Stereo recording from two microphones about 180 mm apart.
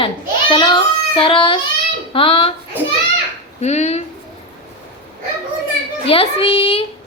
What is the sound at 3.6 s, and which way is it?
Speech, 40° left (ahead or behind).